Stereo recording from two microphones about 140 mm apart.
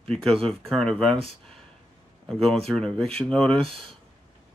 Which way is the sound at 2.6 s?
5° left (ahead or behind).